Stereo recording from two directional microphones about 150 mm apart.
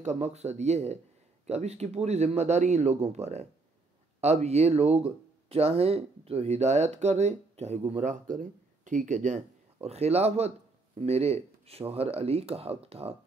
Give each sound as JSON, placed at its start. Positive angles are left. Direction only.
{"t": 0.0, "sound": "speech", "side_deg": -50}